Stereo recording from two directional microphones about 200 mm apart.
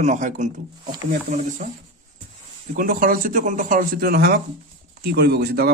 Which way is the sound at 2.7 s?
45° right (ahead or behind).